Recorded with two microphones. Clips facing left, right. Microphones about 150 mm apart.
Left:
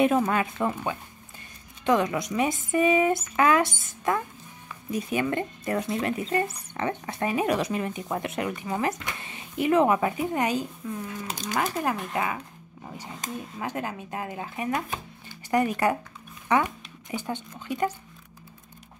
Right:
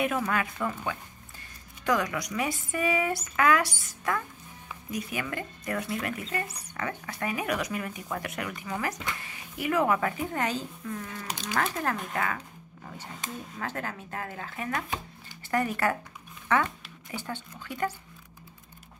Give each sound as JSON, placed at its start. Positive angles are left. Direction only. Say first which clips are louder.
{"t": 0.0, "sound": "speech", "louder": "left 6 dB", "side_deg": 25}